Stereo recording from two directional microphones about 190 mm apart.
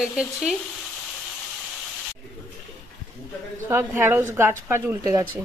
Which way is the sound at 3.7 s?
10° right (ahead or behind).